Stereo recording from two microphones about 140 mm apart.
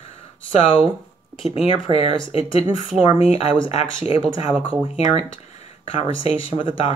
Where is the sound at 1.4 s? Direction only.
45° left (ahead or behind).